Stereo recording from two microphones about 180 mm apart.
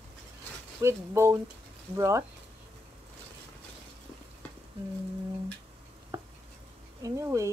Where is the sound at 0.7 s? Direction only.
15° right (ahead or behind).